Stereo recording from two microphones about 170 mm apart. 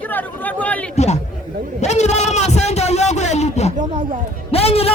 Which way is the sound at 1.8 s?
40° left (ahead or behind).